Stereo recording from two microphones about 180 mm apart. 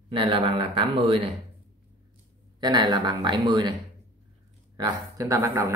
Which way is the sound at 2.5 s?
25° right (ahead or behind).